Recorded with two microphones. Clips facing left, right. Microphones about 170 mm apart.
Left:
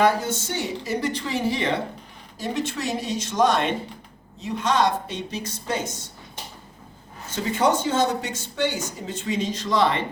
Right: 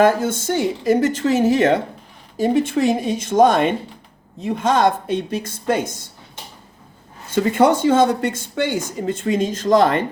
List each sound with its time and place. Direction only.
0.0 s speech: 50° right (ahead or behind)
7.3 s speech: 60° right (ahead or behind)